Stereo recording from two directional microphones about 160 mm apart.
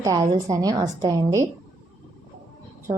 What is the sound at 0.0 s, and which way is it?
A woman's voice, 20° right (ahead or behind).